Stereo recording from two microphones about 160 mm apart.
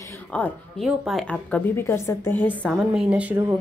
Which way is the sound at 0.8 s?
Centre (ahead or behind).